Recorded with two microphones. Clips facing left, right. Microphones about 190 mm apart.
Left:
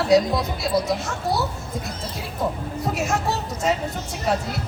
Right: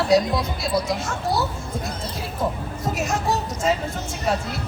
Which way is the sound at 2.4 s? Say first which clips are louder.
Left 1 dB; centre (ahead or behind).